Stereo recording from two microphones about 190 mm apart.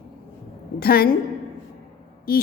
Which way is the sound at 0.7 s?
50° left (ahead or behind).